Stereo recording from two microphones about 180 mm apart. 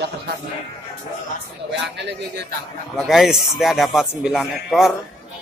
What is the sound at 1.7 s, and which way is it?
Speech, 70° right (ahead or behind).